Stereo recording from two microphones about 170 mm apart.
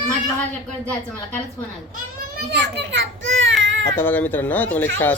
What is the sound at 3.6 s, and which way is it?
Baby cry, 90° right.